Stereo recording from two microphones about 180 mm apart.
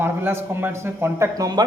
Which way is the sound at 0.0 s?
10° right (ahead or behind).